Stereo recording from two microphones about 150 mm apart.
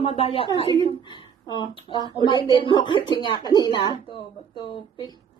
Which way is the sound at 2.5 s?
30° left (ahead or behind).